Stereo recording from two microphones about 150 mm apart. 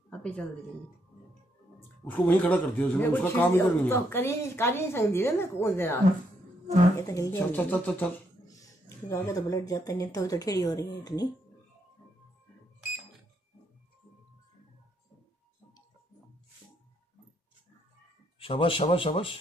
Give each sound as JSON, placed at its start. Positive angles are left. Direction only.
{"t": 0.1, "sound": "a sound", "side_deg": 10}
{"t": 2.2, "sound": "speech", "side_deg": 10}
{"t": 7.0, "sound": "speech", "side_deg": 20}
{"t": 8.5, "sound": "speech", "side_deg": 20}
{"t": 18.4, "sound": "speech", "side_deg": 35}